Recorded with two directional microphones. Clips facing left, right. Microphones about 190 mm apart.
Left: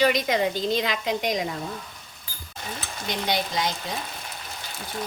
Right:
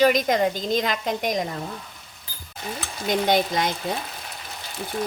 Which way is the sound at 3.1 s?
50° right (ahead or behind).